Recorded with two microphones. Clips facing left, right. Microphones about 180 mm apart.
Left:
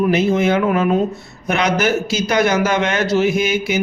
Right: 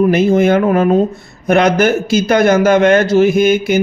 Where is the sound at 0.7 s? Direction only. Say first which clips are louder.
Right 5 dB; 40° right (ahead or behind).